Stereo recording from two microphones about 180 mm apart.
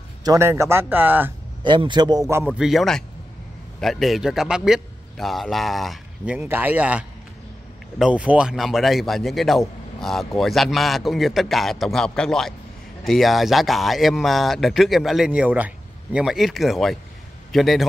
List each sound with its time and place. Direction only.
0.2 s a man's voice: 15° right (ahead or behind)
1.6 s speech: 25° right (ahead or behind)
2.5 s a man's voice: centre (ahead or behind)